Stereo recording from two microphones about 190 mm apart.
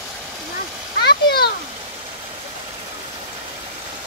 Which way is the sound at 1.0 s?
55° left (ahead or behind).